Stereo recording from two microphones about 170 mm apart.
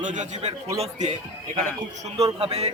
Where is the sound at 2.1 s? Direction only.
35° right (ahead or behind).